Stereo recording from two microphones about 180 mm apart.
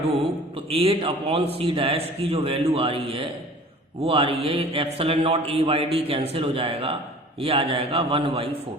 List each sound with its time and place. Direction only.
0.7 s a man's voice: 30° right (ahead or behind)